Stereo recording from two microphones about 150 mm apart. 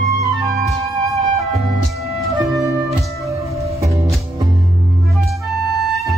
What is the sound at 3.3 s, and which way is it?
Music, 20° right (ahead or behind).